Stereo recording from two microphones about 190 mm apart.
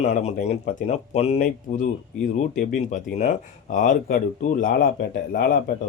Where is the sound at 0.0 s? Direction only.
35° left (ahead or behind).